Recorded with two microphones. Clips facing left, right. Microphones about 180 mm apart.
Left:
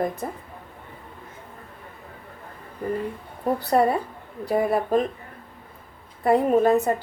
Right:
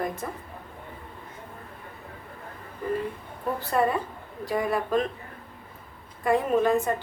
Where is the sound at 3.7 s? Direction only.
40° left (ahead or behind).